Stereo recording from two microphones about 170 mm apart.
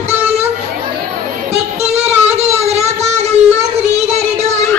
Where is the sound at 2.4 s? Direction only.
40° right (ahead or behind).